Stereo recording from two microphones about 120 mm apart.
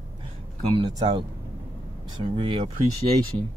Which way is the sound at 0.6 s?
50° right (ahead or behind).